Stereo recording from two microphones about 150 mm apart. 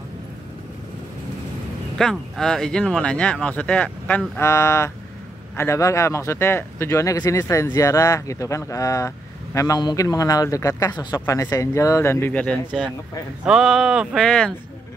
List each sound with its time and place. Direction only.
2.0 s speech: 5° left (ahead or behind)